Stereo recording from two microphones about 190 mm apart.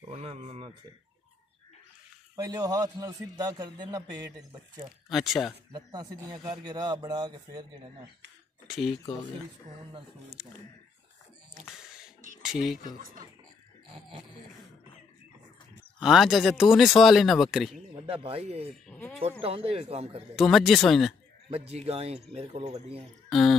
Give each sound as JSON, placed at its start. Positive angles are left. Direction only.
{"t": 0.1, "sound": "a sound", "side_deg": -35}
{"t": 2.3, "sound": "a man's voice", "side_deg": -20}
{"t": 5.1, "sound": "speech", "side_deg": 0}
{"t": 5.7, "sound": "a man's voice", "side_deg": -20}
{"t": 8.6, "sound": "speech", "side_deg": 0}
{"t": 10.4, "sound": "speech", "side_deg": -5}
{"t": 11.6, "sound": "a sound", "side_deg": -5}
{"t": 12.8, "sound": "speech", "side_deg": -45}
{"t": 16.0, "sound": "speech", "side_deg": 0}
{"t": 17.9, "sound": "speech", "side_deg": -30}
{"t": 18.9, "sound": "speech", "side_deg": 10}
{"t": 19.4, "sound": "speech", "side_deg": -30}
{"t": 20.3, "sound": "speech", "side_deg": 0}
{"t": 21.5, "sound": "speech", "side_deg": -30}